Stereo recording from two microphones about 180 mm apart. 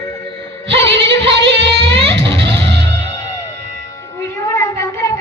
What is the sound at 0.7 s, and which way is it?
Music, 80° right.